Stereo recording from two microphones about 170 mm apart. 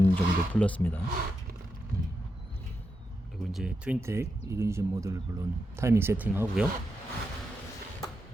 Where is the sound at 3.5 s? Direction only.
5° right (ahead or behind).